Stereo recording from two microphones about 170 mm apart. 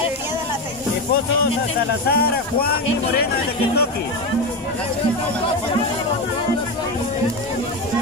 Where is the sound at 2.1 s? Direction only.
65° left (ahead or behind).